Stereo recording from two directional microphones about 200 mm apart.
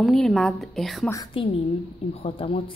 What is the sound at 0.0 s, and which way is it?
A woman's voice, centre (ahead or behind).